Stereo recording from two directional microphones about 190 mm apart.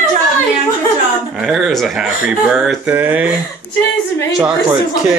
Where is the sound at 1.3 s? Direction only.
Centre (ahead or behind).